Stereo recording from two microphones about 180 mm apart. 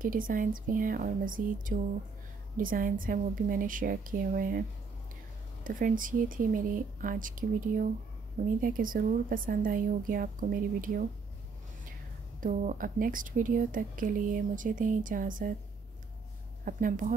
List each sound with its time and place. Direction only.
0.0 s a woman's voice: 50° right (ahead or behind)
12.4 s a woman's voice: 45° right (ahead or behind)
16.6 s a woman's voice: 50° right (ahead or behind)